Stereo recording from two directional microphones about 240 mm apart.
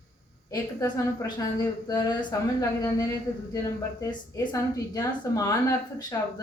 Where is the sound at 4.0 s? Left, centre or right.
Centre.